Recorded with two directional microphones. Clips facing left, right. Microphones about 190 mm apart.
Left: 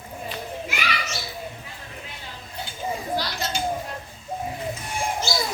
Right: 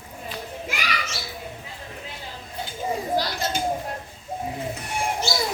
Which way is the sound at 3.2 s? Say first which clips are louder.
Right 3 dB; 50° right (ahead or behind).